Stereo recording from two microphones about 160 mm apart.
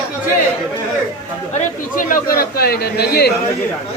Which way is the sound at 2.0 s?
65° left (ahead or behind).